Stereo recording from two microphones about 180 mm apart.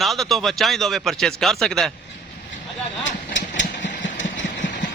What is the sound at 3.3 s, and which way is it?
Vehicle, 90° left.